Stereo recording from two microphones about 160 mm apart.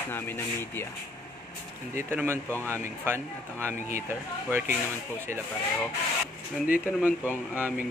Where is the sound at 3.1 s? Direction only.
15° right (ahead or behind).